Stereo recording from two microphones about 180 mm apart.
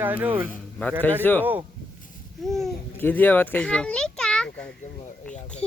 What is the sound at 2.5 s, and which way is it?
A child's voice, centre (ahead or behind).